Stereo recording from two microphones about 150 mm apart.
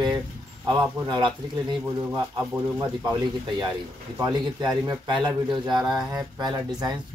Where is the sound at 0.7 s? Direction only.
30° right (ahead or behind).